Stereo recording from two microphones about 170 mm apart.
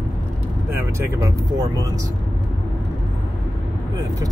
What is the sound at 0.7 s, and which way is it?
Vehicle, 10° right (ahead or behind).